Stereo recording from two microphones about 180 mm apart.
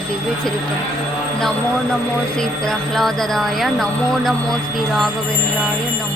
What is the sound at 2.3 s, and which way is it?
Speech, 5° left (ahead or behind).